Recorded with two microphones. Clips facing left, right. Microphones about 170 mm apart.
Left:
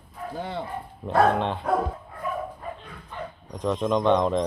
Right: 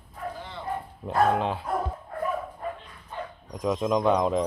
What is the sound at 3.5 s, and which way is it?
Speech, 10° right (ahead or behind).